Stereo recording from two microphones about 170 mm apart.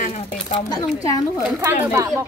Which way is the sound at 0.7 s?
20° left (ahead or behind).